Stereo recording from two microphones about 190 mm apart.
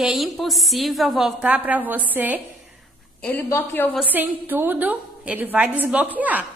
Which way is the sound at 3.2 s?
10° left (ahead or behind).